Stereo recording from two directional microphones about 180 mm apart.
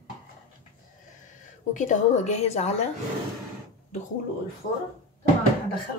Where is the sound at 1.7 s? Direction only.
45° left (ahead or behind).